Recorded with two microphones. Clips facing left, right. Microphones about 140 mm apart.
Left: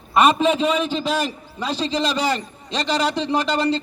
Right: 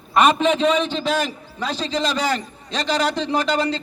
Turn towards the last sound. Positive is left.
turn(degrees=5)  # may be behind; listen again after turning